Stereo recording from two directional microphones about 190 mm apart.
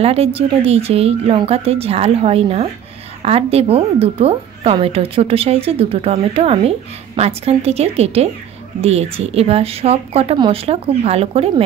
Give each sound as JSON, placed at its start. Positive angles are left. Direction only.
{"t": 0.0, "sound": "a woman's voice", "side_deg": -30}